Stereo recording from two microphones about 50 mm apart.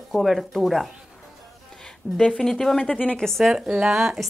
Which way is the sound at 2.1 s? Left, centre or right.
Right.